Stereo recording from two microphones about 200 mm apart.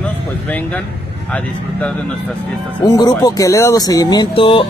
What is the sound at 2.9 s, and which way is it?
Speech, 20° left (ahead or behind).